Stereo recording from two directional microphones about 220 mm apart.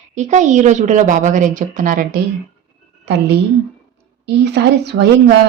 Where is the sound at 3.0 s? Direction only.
50° right (ahead or behind).